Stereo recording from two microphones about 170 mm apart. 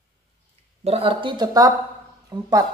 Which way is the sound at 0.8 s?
35° right (ahead or behind).